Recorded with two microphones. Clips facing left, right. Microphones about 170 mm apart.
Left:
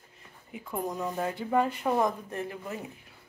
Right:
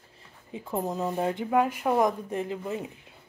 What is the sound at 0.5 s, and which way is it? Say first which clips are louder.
Speech: right 3 dB; 25° right (ahead or behind).